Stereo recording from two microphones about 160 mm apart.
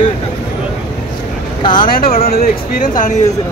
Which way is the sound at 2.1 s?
65° left (ahead or behind).